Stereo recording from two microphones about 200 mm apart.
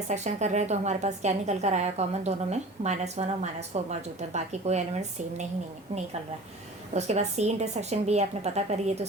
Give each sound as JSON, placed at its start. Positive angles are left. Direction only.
{"t": 0.1, "sound": "a woman's voice", "side_deg": -35}
{"t": 6.9, "sound": "a woman's voice", "side_deg": -35}